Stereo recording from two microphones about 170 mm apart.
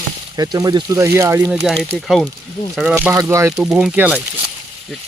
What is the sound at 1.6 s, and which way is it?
Speech, centre (ahead or behind).